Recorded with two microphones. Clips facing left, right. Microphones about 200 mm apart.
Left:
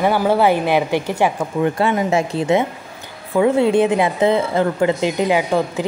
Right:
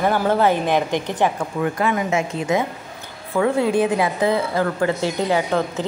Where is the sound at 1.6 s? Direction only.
30° left (ahead or behind).